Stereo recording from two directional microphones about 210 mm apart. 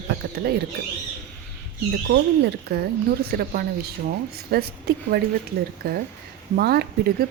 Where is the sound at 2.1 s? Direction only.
50° right (ahead or behind).